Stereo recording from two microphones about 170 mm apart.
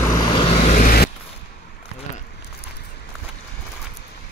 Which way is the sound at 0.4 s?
35° left (ahead or behind).